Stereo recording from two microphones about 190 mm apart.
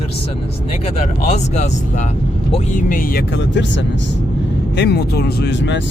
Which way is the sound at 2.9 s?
50° left (ahead or behind).